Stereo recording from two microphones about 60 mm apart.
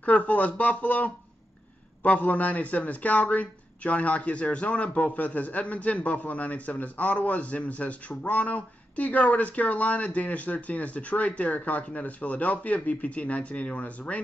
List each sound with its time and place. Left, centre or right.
0.0 s speech: left